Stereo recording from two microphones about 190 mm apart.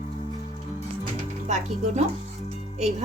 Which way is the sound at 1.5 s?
35° right (ahead or behind).